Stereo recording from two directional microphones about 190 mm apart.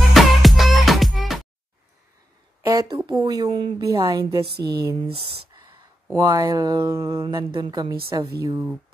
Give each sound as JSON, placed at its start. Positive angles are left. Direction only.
{"t": 0.1, "sound": "music", "side_deg": 0}
{"t": 2.6, "sound": "a woman's voice", "side_deg": -20}
{"t": 4.6, "sound": "speech", "side_deg": -55}
{"t": 5.0, "sound": "a woman's voice", "side_deg": -30}